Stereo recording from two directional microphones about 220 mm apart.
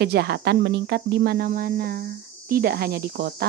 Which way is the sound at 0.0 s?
45° right (ahead or behind).